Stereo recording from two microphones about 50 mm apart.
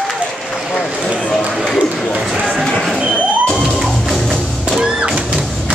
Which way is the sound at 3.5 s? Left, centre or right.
Centre.